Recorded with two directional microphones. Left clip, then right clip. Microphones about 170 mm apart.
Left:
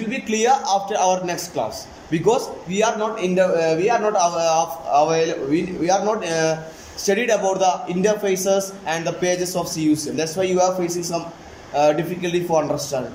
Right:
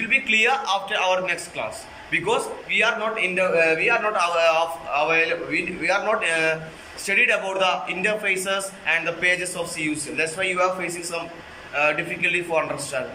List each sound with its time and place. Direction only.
0.3 s a man's voice: 40° left (ahead or behind)